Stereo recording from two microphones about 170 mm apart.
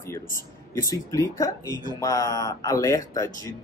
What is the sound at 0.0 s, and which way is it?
Speech, 15° left (ahead or behind).